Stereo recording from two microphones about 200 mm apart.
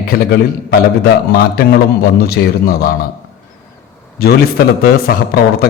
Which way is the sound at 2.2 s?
50° left (ahead or behind).